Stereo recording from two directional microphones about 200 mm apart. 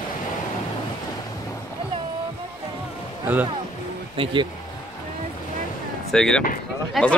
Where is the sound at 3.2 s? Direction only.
10° right (ahead or behind).